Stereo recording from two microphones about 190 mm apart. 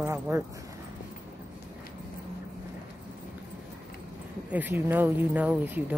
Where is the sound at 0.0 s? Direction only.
15° right (ahead or behind).